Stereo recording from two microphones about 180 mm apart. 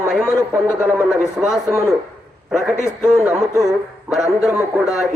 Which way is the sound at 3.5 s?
20° right (ahead or behind).